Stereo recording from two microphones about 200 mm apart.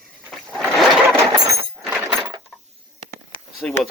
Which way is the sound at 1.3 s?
15° right (ahead or behind).